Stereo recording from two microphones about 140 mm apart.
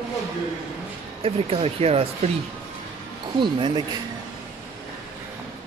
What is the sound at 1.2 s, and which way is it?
Speech, 45° right (ahead or behind).